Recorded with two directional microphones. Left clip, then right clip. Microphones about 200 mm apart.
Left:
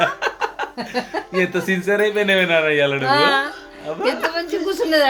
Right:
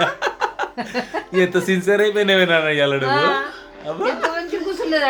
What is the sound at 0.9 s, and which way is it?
Speech, 30° left (ahead or behind).